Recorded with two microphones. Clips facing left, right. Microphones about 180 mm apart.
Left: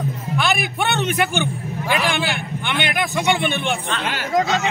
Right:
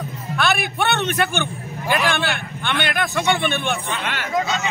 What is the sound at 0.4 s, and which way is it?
Speech, 15° left (ahead or behind).